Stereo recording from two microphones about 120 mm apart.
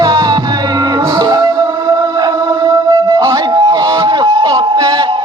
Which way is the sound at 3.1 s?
25° right (ahead or behind).